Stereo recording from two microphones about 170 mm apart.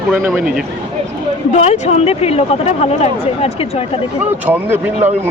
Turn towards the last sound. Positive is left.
turn(degrees=-10)  # may be behind; listen again after turning